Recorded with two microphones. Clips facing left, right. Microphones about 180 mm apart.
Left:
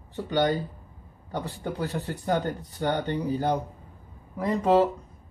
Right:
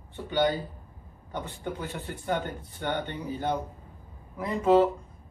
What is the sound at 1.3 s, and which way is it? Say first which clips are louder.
Speech: left 3 dB; 35° left (ahead or behind).